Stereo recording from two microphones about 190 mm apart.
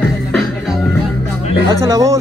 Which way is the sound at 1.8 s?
15° right (ahead or behind).